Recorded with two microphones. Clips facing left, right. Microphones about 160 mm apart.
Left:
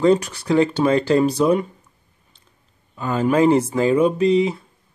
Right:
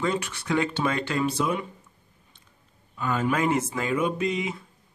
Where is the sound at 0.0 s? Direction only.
35° left (ahead or behind).